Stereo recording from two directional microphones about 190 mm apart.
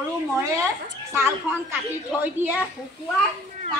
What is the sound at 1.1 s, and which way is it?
A man's voice, 10° right (ahead or behind).